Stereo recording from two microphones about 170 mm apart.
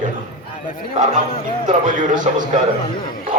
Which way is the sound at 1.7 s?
50° right (ahead or behind).